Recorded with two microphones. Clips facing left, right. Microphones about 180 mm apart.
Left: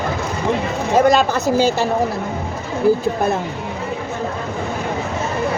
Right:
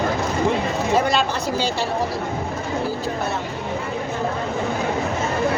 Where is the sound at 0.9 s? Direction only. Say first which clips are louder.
Left 8 dB; 45° left (ahead or behind).